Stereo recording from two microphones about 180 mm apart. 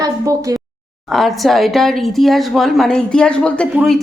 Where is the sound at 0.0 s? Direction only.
20° right (ahead or behind).